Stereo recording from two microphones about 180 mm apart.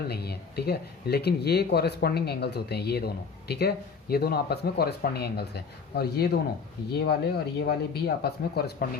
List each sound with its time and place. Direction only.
0.1 s speech: 60° left (ahead or behind)